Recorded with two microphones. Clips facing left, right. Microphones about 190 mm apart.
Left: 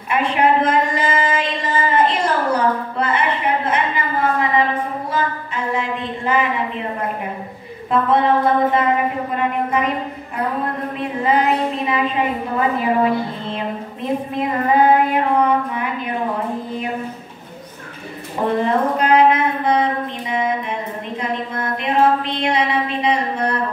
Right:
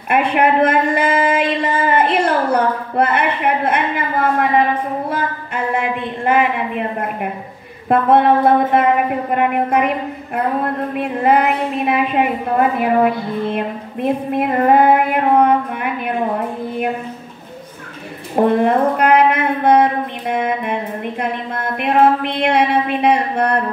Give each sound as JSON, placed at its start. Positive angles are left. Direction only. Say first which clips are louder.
{"t": 0.1, "sound": "a sound", "louder": "right 2 dB", "side_deg": -60}
{"t": 5.1, "sound": "a woman's voice", "louder": "right 1 dB", "side_deg": -60}
{"t": 7.9, "sound": "a woman's voice", "louder": "right 4 dB", "side_deg": -60}
{"t": 11.0, "sound": "a woman's voice", "louder": "right 3 dB", "side_deg": -60}
{"t": 18.3, "sound": "a woman's voice", "louder": "right 5 dB", "side_deg": -60}